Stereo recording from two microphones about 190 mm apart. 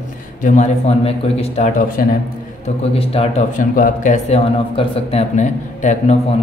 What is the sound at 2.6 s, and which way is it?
Speech, 30° left (ahead or behind).